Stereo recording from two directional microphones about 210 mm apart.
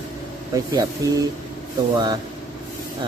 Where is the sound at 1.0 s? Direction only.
15° right (ahead or behind).